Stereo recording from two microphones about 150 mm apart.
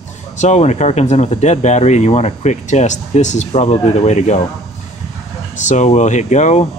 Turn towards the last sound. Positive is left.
turn(degrees=50)  # may be behind; listen again after turning